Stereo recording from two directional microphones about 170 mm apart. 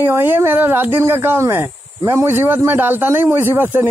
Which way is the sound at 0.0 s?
15° right (ahead or behind).